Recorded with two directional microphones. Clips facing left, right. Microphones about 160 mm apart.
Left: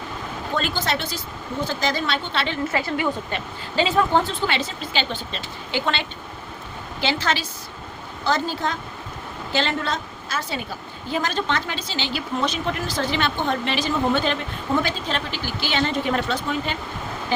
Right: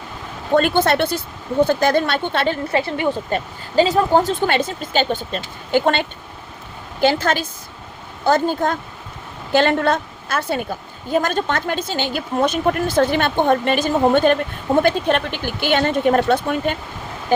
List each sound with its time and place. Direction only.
0.5 s a woman's voice: 55° right (ahead or behind)
2.7 s speech: 25° right (ahead or behind)
3.2 s a woman's voice: 40° right (ahead or behind)